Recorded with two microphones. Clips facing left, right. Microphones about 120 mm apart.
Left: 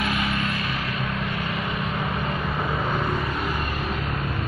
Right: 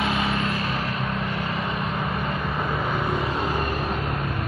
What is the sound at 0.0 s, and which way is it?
Music, 25° right (ahead or behind).